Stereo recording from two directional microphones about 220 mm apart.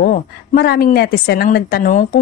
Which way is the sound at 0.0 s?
45° left (ahead or behind).